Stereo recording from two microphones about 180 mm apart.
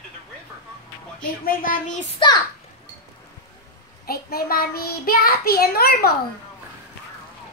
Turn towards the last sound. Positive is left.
turn(degrees=60)  # may be behind; listen again after turning